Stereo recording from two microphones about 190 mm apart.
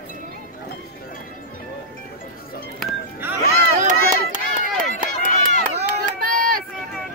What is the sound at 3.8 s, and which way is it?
Run, 40° right (ahead or behind).